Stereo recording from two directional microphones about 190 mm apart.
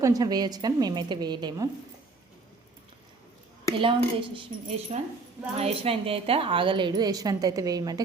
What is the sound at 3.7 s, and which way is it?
A woman's voice, 25° right (ahead or behind).